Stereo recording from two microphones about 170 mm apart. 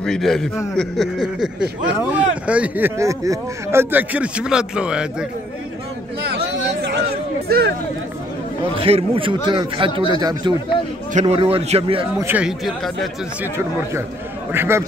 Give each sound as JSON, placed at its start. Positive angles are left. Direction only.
{"t": 0.0, "sound": "speech", "side_deg": 5}
{"t": 6.3, "sound": "a sound", "side_deg": -80}
{"t": 7.4, "sound": "speech", "side_deg": -65}
{"t": 8.7, "sound": "a man's voice", "side_deg": -35}
{"t": 11.1, "sound": "a man's voice", "side_deg": -35}
{"t": 12.2, "sound": "speech", "side_deg": -10}
{"t": 14.5, "sound": "speech", "side_deg": -15}